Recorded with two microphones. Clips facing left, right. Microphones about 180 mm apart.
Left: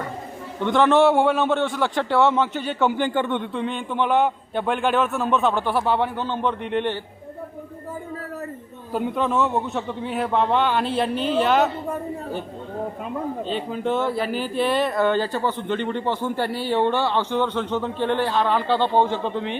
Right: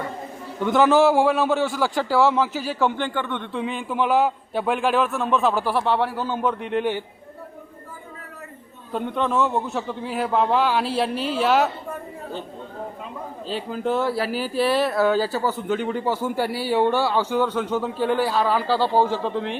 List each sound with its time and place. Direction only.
0.6 s speech: 5° right (ahead or behind)
3.0 s speech: 20° left (ahead or behind)
3.5 s speech: 5° right (ahead or behind)
8.9 s speech: 5° left (ahead or behind)
13.5 s speech: centre (ahead or behind)